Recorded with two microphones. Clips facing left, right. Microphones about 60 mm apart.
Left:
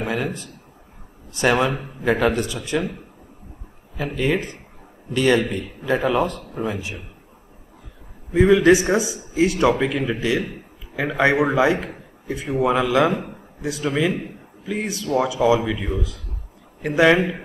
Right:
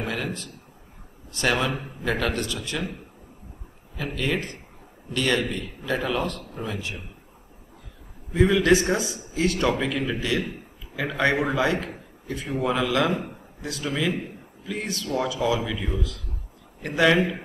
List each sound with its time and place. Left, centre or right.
0.0 s a sound: centre
1.3 s a man's voice: centre
3.9 s a man's voice: centre
8.4 s a man's voice: centre